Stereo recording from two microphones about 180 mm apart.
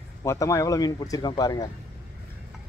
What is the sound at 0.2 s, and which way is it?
Speech, 15° left (ahead or behind).